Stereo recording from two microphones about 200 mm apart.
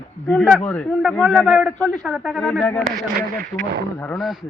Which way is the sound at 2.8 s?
50° right (ahead or behind).